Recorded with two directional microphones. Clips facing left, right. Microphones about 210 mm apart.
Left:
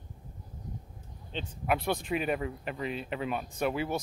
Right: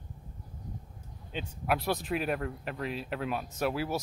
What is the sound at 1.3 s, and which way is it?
Speech, centre (ahead or behind).